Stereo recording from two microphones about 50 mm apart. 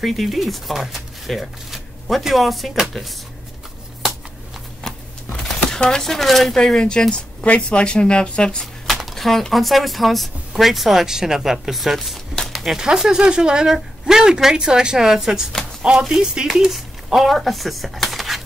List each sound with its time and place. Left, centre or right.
0.0 s speech: centre
4.8 s a sound: centre
5.4 s speech: centre
6.6 s speech: centre
8.8 s speech: centre
12.8 s speech: centre